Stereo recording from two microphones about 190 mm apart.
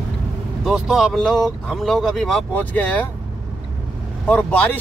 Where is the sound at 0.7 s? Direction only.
Centre (ahead or behind).